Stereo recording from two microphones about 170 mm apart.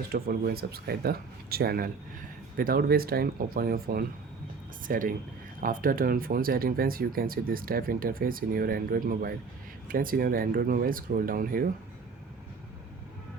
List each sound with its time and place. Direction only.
0.1 s speech: 65° right (ahead or behind)